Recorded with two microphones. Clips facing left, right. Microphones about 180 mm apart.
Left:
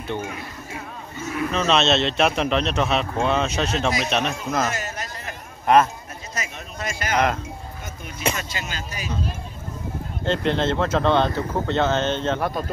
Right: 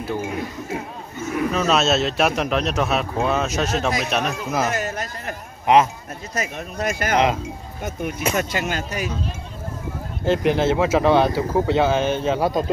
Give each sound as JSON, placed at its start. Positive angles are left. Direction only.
{"t": 0.0, "sound": "speech", "side_deg": -5}
{"t": 1.5, "sound": "speech", "side_deg": -5}
{"t": 4.7, "sound": "a sound", "side_deg": -50}
{"t": 5.7, "sound": "speech", "side_deg": -15}
{"t": 6.3, "sound": "speech", "side_deg": -55}
{"t": 8.4, "sound": "speech", "side_deg": -55}
{"t": 10.2, "sound": "speech", "side_deg": -10}